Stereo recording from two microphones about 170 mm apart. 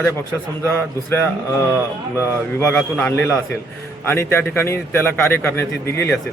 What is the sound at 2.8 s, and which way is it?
A man's voice, 10° left (ahead or behind).